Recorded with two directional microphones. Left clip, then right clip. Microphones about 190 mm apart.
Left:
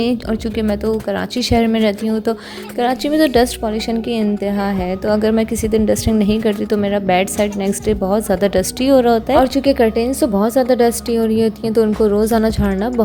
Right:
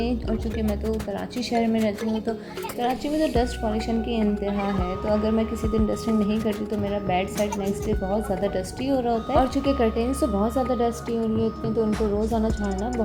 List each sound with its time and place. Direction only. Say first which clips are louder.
0.0 s a woman's voice: left 8 dB; 45° left (ahead or behind)